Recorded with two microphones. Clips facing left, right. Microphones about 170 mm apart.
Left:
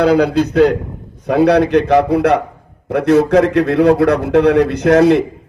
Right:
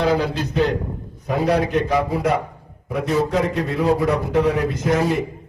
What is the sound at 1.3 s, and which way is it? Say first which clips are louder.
A man's voice: left 8 dB; 75° left (ahead or behind).